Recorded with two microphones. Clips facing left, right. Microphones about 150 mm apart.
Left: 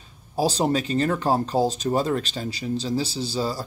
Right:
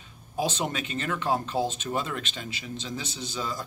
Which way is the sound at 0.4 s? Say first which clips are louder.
Left 7 dB; 35° left (ahead or behind).